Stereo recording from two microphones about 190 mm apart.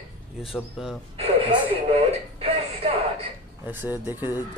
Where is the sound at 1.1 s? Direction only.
30° right (ahead or behind).